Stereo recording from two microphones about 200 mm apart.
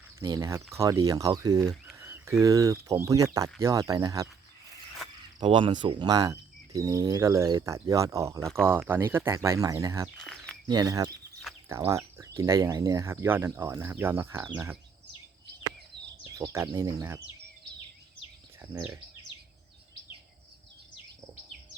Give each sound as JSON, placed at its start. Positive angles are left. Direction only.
{"t": 0.2, "sound": "speech", "side_deg": -15}
{"t": 5.4, "sound": "speech", "side_deg": -25}
{"t": 10.2, "sound": "a sound", "side_deg": 5}
{"t": 10.7, "sound": "speech", "side_deg": -20}
{"t": 16.4, "sound": "speech", "side_deg": -15}